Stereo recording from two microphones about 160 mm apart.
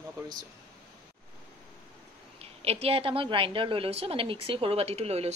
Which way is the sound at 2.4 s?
40° right (ahead or behind).